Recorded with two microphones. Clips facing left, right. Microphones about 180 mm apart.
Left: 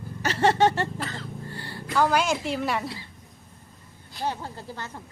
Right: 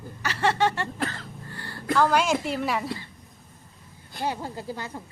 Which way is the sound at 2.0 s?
Centre (ahead or behind).